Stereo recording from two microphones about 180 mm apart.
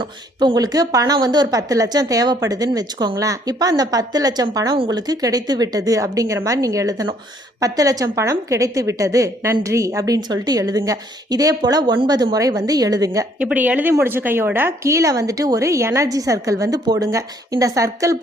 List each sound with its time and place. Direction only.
0.0 s speech: 25° right (ahead or behind)
13.4 s speech: 10° right (ahead or behind)